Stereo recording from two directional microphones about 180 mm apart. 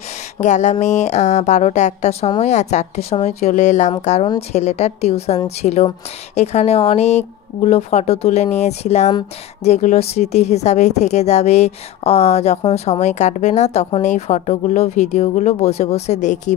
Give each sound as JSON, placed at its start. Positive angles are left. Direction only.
{"t": 0.4, "sound": "a woman's voice", "side_deg": 40}